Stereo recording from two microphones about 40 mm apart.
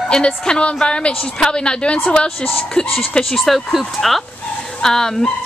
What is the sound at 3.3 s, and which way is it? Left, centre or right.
Speech, centre.